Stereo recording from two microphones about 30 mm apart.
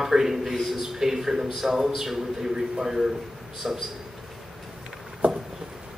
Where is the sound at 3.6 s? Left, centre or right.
Right.